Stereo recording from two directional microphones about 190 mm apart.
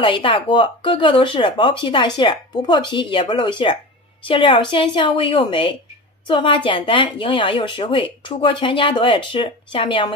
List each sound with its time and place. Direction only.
0.0 s a woman's voice: 25° left (ahead or behind)